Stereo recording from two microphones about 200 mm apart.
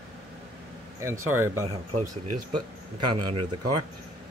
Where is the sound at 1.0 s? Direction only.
15° right (ahead or behind).